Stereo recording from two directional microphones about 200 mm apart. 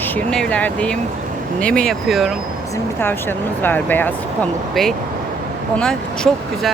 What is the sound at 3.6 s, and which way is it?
Speech, 10° left (ahead or behind).